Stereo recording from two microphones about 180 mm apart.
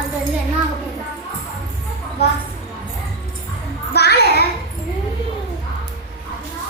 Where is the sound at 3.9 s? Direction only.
65° left (ahead or behind).